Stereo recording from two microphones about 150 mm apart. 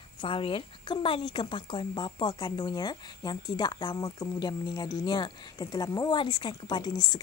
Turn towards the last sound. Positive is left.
turn(degrees=30)  # may be behind; listen again after turning